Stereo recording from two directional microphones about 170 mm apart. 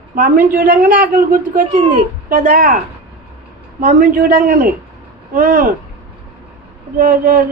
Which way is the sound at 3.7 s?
55° right (ahead or behind).